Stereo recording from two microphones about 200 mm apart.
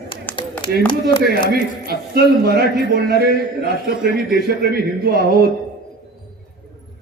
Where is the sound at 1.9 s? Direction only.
55° right (ahead or behind).